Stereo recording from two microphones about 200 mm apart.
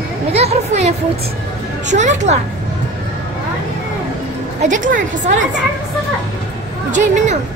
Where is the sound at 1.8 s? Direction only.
35° right (ahead or behind).